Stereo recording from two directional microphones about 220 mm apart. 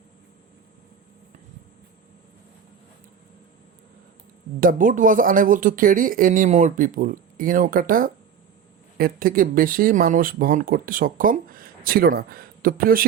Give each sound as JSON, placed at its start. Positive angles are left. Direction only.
{"t": 4.6, "sound": "speech", "side_deg": -40}